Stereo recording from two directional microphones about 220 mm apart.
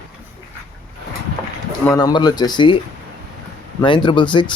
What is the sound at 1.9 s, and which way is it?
Speech, 15° left (ahead or behind).